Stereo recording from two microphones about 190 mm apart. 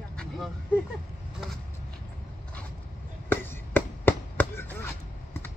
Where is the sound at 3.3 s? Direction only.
10° left (ahead or behind).